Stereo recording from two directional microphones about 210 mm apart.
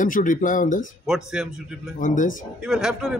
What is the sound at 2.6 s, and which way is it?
Speech, centre (ahead or behind).